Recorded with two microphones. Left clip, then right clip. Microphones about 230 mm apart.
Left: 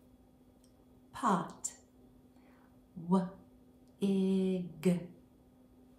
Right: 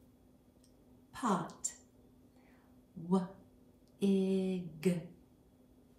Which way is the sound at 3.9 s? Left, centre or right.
Centre.